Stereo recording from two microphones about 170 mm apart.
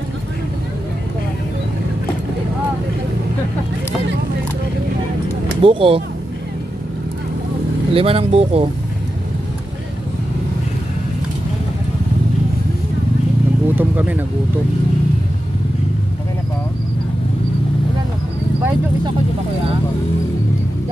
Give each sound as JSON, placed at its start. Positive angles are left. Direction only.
{"t": 5.6, "sound": "speech", "side_deg": -30}
{"t": 7.9, "sound": "speech", "side_deg": -35}
{"t": 13.7, "sound": "vehicle", "side_deg": -10}